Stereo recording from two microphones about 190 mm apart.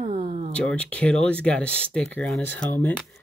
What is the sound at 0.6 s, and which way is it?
Speech, 5° left (ahead or behind).